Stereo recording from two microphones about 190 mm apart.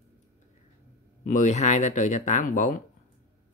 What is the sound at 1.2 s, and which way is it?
Speech, 40° left (ahead or behind).